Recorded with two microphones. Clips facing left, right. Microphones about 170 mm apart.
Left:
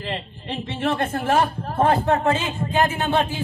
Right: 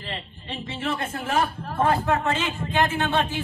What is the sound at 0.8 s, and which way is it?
Speech, 55° left (ahead or behind).